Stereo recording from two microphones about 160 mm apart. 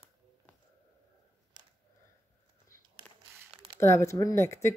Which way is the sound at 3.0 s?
10° left (ahead or behind).